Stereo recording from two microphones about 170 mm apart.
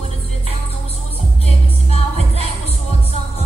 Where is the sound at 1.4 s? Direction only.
40° left (ahead or behind).